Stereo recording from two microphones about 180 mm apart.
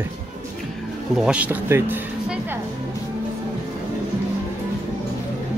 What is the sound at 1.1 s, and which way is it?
Speech, 5° right (ahead or behind).